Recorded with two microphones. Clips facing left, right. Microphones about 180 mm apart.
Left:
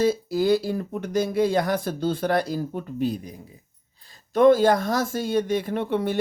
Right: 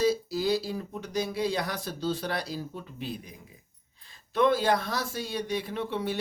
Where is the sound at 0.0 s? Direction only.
55° left (ahead or behind).